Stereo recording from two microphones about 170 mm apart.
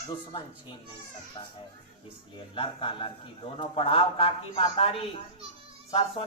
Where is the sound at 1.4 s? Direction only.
25° left (ahead or behind).